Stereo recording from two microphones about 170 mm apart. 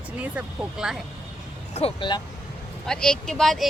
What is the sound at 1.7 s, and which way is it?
Speech, 30° left (ahead or behind).